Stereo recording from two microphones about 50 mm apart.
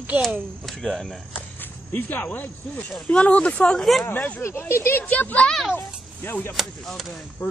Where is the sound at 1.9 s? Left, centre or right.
Left.